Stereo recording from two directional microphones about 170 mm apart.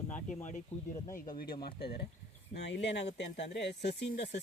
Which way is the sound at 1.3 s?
60° left (ahead or behind).